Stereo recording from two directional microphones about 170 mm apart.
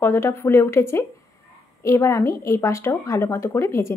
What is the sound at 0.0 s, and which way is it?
A woman's voice, 15° left (ahead or behind).